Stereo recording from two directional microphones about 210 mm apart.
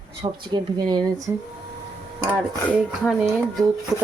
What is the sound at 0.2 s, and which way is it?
Speech, 20° right (ahead or behind).